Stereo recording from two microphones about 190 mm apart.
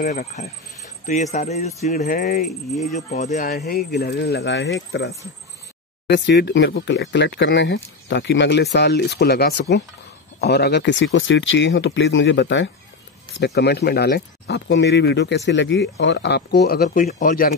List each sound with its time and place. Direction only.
0.0 s speech: 40° left (ahead or behind)
2.4 s speech: centre (ahead or behind)
3.0 s speech: 35° left (ahead or behind)
3.5 s speech: 55° left (ahead or behind); by 12.7 s 75° left (ahead or behind)
13.4 s speech: 60° left (ahead or behind)
17.0 s speech: 40° left (ahead or behind)